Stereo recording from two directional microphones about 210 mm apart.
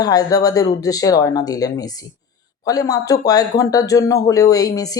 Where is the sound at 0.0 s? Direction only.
15° left (ahead or behind).